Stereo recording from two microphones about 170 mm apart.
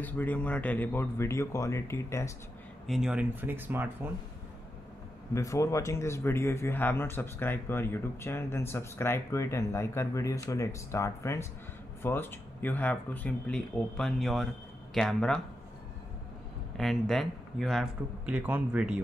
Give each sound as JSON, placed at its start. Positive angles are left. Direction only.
{"t": 0.0, "sound": "speech", "side_deg": 10}
{"t": 2.9, "sound": "speech", "side_deg": -5}
{"t": 5.3, "sound": "speech", "side_deg": 15}
{"t": 16.7, "sound": "speech", "side_deg": 0}